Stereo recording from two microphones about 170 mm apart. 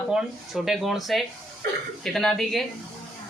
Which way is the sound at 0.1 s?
5° right (ahead or behind).